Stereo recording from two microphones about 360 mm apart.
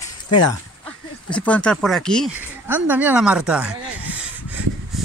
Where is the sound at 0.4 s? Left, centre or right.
Centre.